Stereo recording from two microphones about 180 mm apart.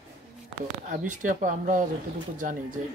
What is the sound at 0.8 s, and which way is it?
Speech, 45° right (ahead or behind).